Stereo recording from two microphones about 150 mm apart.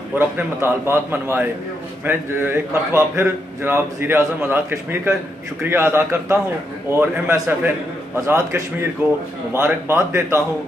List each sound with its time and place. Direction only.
0.4 s a man's voice: 15° right (ahead or behind)